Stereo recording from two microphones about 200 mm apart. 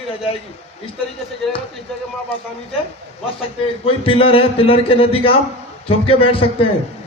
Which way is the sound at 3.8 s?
30° left (ahead or behind).